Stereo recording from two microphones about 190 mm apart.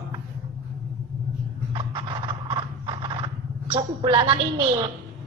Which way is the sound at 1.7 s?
25° right (ahead or behind).